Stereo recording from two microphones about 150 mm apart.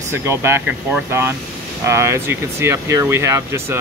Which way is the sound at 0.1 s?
15° right (ahead or behind).